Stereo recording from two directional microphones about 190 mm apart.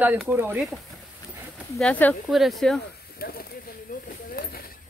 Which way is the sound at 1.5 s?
Centre (ahead or behind).